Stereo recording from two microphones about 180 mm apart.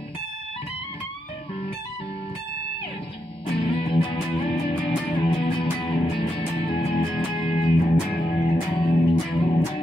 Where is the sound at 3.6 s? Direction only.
30° left (ahead or behind).